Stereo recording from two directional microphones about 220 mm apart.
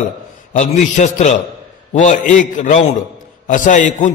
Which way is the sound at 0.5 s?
30° left (ahead or behind).